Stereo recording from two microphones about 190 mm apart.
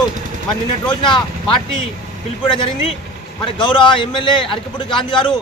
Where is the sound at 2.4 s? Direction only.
25° left (ahead or behind).